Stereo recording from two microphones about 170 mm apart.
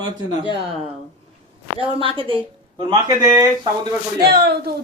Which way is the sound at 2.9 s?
20° right (ahead or behind).